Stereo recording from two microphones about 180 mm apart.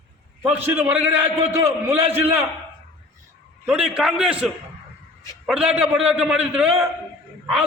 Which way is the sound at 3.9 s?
5° right (ahead or behind).